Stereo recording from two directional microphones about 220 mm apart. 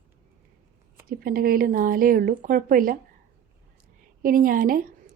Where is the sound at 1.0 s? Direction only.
40° right (ahead or behind).